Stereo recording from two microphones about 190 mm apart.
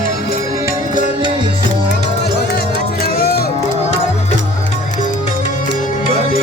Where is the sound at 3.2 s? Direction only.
55° left (ahead or behind).